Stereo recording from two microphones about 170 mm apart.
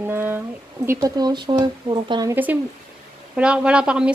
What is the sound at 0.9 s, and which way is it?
Speech, 25° right (ahead or behind).